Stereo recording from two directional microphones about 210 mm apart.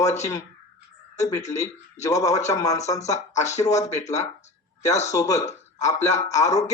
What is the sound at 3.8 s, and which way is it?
Speech, 35° left (ahead or behind).